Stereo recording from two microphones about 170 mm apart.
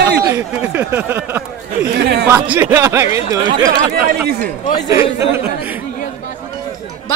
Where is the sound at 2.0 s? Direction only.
70° right (ahead or behind).